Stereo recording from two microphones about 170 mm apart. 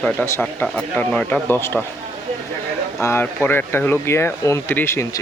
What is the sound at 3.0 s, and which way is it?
Speech, 15° left (ahead or behind).